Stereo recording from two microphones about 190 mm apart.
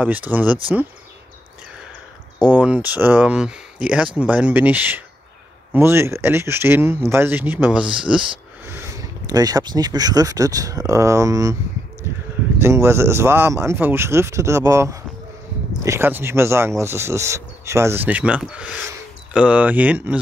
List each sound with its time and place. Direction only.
0.0 s speech: 10° right (ahead or behind)
2.4 s speech: 5° right (ahead or behind)
12.1 s a sound: 10° right (ahead or behind)
12.5 s speech: 15° right (ahead or behind)